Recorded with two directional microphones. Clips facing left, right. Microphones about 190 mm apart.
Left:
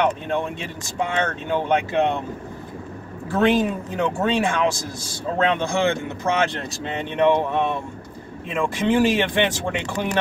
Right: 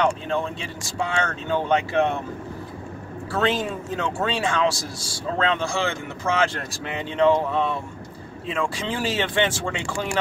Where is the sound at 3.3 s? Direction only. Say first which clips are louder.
Left 5 dB; 15° left (ahead or behind).